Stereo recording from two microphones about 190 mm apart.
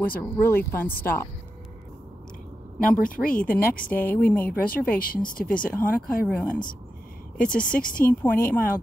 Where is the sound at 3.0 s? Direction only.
45° left (ahead or behind).